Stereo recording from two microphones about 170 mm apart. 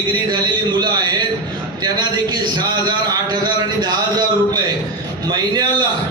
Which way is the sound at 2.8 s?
25° right (ahead or behind).